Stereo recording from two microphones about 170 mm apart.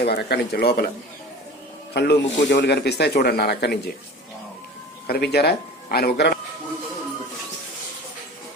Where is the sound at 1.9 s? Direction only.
75° left (ahead or behind).